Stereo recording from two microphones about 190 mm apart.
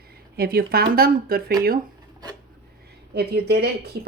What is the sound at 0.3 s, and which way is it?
Speech, 50° right (ahead or behind).